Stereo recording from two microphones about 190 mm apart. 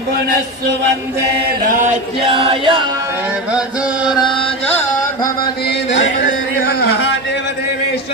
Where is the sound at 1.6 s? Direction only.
45° right (ahead or behind).